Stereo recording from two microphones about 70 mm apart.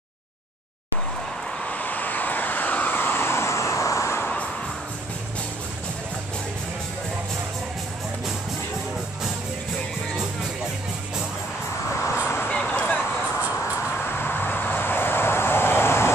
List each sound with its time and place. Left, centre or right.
1.6 s vehicle: left
12.1 s vehicle: left
12.4 s a sound: left
14.1 s vehicle: left